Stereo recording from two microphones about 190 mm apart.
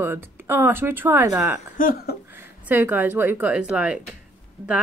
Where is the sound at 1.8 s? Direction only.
50° left (ahead or behind).